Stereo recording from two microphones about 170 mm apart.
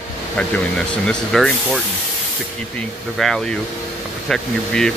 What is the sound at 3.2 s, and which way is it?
Speech, centre (ahead or behind).